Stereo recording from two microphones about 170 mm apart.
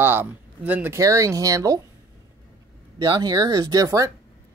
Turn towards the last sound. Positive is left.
turn(degrees=-20)  # may be behind; listen again after turning